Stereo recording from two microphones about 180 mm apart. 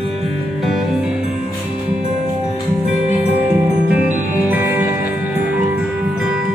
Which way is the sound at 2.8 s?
10° right (ahead or behind).